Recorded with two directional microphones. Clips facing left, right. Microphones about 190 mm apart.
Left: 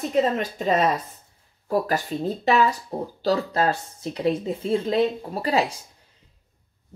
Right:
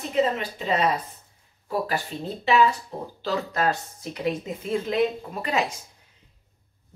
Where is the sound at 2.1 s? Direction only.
45° left (ahead or behind).